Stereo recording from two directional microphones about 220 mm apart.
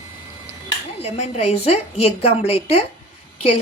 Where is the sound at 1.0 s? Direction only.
30° left (ahead or behind).